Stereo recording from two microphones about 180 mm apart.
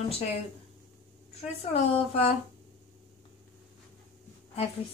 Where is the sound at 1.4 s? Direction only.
35° left (ahead or behind).